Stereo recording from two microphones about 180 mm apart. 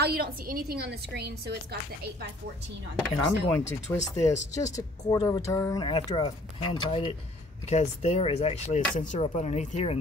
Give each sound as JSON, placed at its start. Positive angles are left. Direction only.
{"t": 0.0, "sound": "a woman's voice", "side_deg": -60}
{"t": 3.0, "sound": "speech", "side_deg": 10}